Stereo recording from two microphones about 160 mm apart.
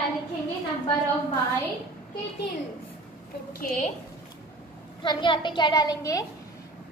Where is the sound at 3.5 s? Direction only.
55° left (ahead or behind).